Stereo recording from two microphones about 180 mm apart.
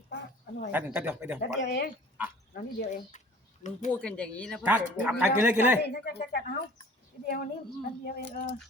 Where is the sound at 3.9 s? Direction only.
5° left (ahead or behind).